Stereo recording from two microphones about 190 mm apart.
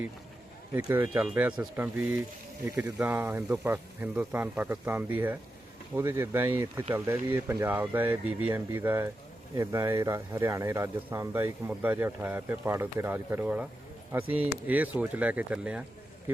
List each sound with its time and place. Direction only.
0.7 s speech: 15° right (ahead or behind)